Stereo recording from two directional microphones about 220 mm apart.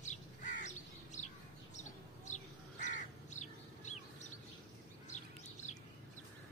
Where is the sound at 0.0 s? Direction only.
35° left (ahead or behind).